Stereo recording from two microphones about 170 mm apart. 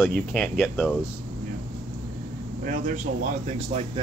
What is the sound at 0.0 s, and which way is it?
Speech, 5° left (ahead or behind).